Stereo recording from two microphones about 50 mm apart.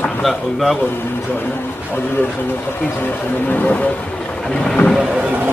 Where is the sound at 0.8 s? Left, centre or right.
Left.